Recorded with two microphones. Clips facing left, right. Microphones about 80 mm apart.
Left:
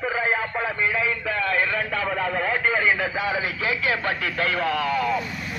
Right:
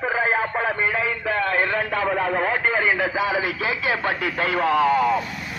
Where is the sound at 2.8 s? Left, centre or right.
Centre.